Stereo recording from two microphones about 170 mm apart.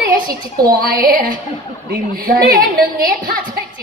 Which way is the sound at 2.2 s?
60° right (ahead or behind).